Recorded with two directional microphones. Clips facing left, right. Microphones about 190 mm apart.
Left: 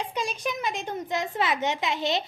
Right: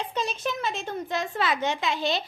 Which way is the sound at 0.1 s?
10° left (ahead or behind).